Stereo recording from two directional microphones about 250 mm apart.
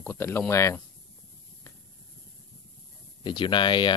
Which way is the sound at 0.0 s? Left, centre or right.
Centre.